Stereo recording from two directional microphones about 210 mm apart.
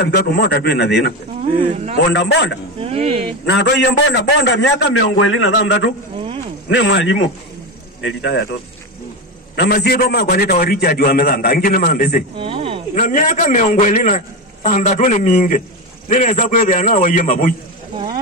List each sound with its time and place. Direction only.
0.0 s a man's voice: 50° left (ahead or behind)
1.4 s speech: 30° right (ahead or behind)
2.1 s a man's voice: 55° left (ahead or behind)
2.8 s speech: 25° right (ahead or behind)
3.4 s a man's voice: 55° left (ahead or behind)
5.3 s a man's voice: 80° left
6.7 s a man's voice: 60° left (ahead or behind)
9.6 s a man's voice: 50° left (ahead or behind)
12.4 s a sound: 25° right (ahead or behind)
12.9 s a man's voice: 40° left (ahead or behind)